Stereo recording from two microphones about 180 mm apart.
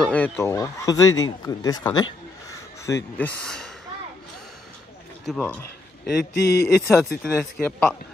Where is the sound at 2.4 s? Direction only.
15° left (ahead or behind).